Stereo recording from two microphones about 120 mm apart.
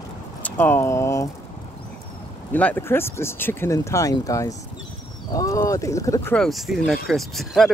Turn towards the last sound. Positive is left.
turn(degrees=0)  # may be behind; listen again after turning